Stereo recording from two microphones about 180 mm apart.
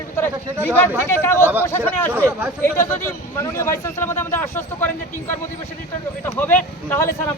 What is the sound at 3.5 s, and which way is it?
Speech, 15° left (ahead or behind).